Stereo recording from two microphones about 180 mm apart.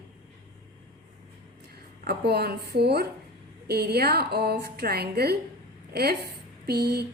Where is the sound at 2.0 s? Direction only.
60° right (ahead or behind).